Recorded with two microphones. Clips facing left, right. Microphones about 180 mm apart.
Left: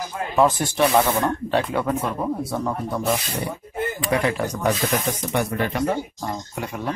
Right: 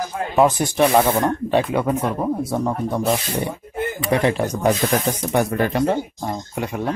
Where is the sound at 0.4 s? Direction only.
15° right (ahead or behind).